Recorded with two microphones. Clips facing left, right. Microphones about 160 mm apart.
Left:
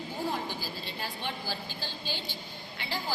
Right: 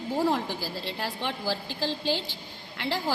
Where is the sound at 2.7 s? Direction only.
75° right (ahead or behind).